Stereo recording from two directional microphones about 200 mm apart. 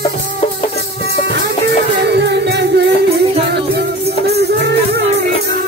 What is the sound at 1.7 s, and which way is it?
Music, 60° right (ahead or behind).